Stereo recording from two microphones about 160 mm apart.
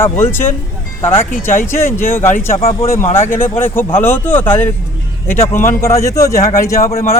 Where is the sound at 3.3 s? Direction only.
15° left (ahead or behind).